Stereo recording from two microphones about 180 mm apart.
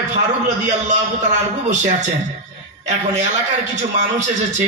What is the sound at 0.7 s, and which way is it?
A man's voice, 40° right (ahead or behind).